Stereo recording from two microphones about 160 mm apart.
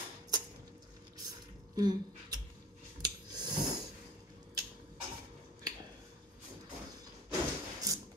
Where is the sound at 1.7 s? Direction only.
25° right (ahead or behind).